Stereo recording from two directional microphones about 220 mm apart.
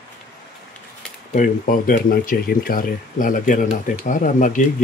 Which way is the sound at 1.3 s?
40° left (ahead or behind).